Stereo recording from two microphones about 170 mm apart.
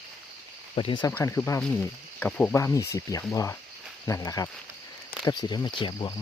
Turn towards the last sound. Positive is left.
turn(degrees=25)  # may be behind; listen again after turning